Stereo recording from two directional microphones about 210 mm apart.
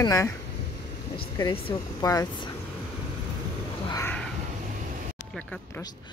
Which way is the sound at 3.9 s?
10° left (ahead or behind).